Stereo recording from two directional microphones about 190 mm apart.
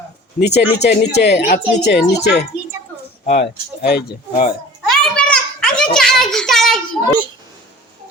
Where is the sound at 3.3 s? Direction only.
60° left (ahead or behind).